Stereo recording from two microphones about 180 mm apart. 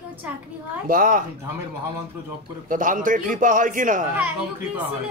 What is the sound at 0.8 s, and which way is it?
Speech, 50° right (ahead or behind).